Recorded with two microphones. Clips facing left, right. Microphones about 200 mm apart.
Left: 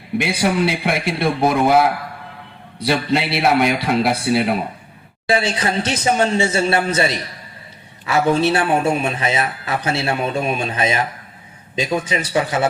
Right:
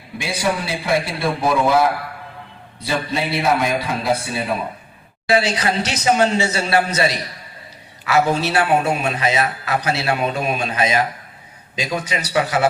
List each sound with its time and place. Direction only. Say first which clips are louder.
0.2 s a man's voice: left 4 dB; 65° left (ahead or behind)
2.8 s a man's voice: left 4 dB; 75° left (ahead or behind)
5.3 s a man's voice: right 1 dB; 30° left (ahead or behind)